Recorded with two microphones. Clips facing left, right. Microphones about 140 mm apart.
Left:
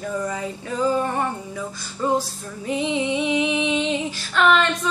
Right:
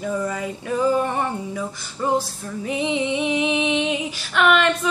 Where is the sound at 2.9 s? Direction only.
15° right (ahead or behind).